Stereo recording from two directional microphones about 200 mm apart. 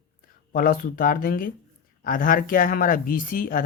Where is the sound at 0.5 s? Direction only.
45° left (ahead or behind).